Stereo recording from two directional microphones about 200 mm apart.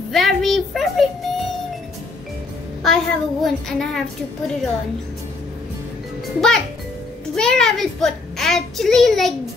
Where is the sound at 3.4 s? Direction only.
Centre (ahead or behind).